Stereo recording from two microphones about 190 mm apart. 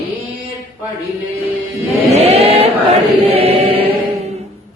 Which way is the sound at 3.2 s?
30° right (ahead or behind).